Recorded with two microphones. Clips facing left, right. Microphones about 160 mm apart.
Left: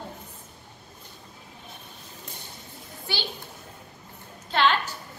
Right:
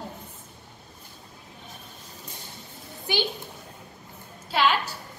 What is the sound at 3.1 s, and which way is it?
Speech, 15° right (ahead or behind).